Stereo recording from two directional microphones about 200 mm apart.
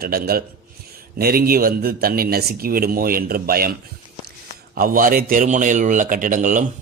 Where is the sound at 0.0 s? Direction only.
50° right (ahead or behind).